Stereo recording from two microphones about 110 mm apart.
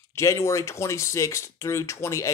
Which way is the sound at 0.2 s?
25° left (ahead or behind).